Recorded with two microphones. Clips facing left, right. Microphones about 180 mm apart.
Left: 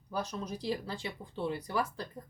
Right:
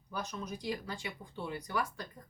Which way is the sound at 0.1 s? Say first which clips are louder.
Left 3 dB; 35° left (ahead or behind).